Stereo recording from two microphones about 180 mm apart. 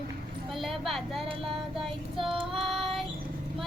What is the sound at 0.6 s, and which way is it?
Speech, centre (ahead or behind).